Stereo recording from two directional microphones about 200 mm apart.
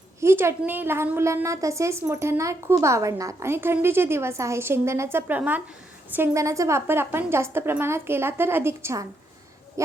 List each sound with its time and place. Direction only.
0.2 s a woman's voice: 10° right (ahead or behind)